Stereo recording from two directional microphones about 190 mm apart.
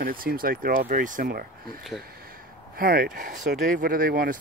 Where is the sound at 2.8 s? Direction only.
50° right (ahead or behind).